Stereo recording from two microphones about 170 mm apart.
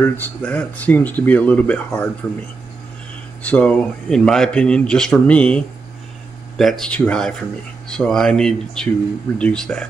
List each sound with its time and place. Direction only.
0.0 s speech: 10° left (ahead or behind)
3.4 s speech: 5° left (ahead or behind)
6.6 s speech: centre (ahead or behind)